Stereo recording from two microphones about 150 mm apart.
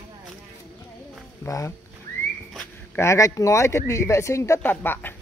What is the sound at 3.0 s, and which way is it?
Speech, 20° left (ahead or behind).